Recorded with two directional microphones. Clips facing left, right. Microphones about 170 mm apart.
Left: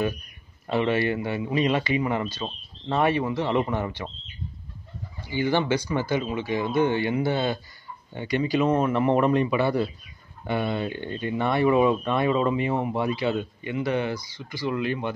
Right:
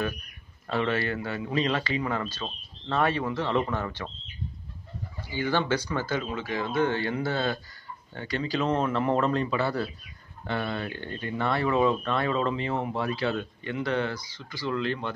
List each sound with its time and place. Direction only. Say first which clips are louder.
0.7 s speech: left 4 dB; 15° left (ahead or behind)
5.3 s speech: left 3 dB; 20° left (ahead or behind)